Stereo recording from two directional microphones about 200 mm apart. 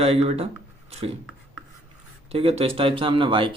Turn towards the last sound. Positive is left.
turn(degrees=-25)  # may be behind; listen again after turning